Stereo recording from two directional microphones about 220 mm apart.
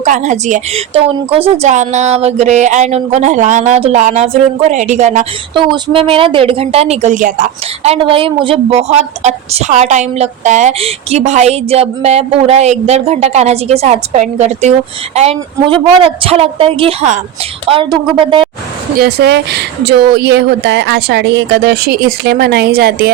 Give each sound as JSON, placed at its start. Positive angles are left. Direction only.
{"t": 0.0, "sound": "a woman's voice", "side_deg": -30}
{"t": 7.9, "sound": "a woman's voice", "side_deg": -25}
{"t": 18.9, "sound": "speech", "side_deg": -50}